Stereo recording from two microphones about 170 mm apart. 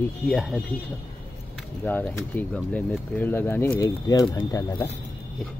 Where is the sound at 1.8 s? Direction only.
10° left (ahead or behind).